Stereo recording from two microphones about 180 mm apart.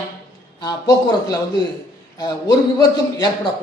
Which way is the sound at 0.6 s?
20° left (ahead or behind).